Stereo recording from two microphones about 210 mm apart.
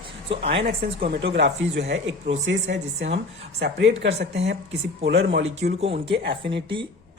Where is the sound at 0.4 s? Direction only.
50° right (ahead or behind).